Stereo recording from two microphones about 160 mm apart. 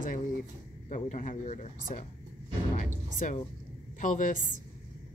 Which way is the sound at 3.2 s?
55° left (ahead or behind).